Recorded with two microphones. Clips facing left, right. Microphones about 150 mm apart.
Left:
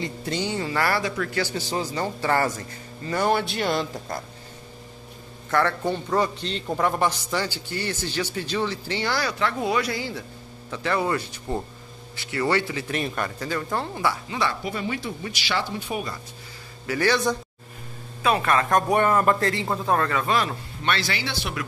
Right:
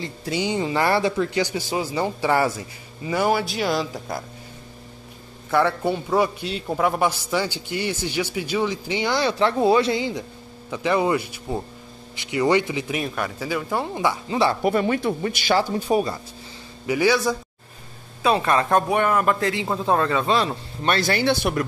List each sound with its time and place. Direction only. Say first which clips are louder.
0.2 s a man's voice: right 5 dB; 10° right (ahead or behind)
5.5 s a man's voice: right 3 dB; 10° right (ahead or behind)
11.5 s speech: right 1 dB; 5° right (ahead or behind)
12.2 s a man's voice: right 4 dB; 15° right (ahead or behind)
12.9 s a man's voice: left 2 dB; 5° right (ahead or behind); by 14.6 s 30° right (ahead or behind)
14.6 s speech: right 9 dB; 55° right (ahead or behind); by 16.2 s 35° right (ahead or behind)
16.8 s a man's voice: right 3 dB; 15° right (ahead or behind)
18.3 s speech: right 2 dB; 20° right (ahead or behind)
19.0 s speech: even; 5° right (ahead or behind)
19.8 s speech: right 3 dB; 15° right (ahead or behind)
20.8 s speech: right 6 dB; 45° right (ahead or behind)